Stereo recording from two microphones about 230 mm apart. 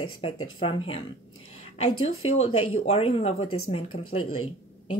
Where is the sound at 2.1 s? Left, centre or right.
Left.